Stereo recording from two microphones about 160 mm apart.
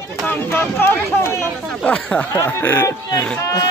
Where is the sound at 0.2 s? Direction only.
10° left (ahead or behind).